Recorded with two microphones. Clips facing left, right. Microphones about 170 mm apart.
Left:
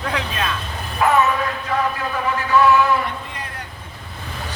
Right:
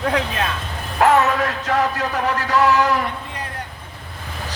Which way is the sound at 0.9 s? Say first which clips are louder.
Right 2 dB; 80° right.